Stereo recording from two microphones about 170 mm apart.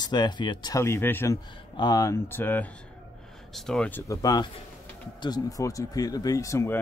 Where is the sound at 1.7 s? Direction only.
25° left (ahead or behind).